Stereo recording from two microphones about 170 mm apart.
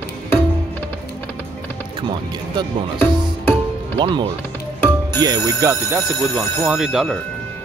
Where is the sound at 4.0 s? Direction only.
30° right (ahead or behind).